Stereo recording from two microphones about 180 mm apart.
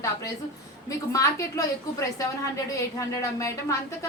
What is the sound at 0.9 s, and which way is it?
A woman's voice, 15° left (ahead or behind).